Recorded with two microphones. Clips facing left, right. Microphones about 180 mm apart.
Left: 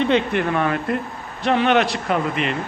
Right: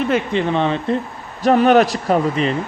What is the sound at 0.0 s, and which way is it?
Speech, 5° right (ahead or behind).